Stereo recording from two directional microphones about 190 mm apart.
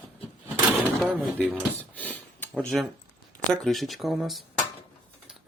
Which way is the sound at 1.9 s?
10° left (ahead or behind).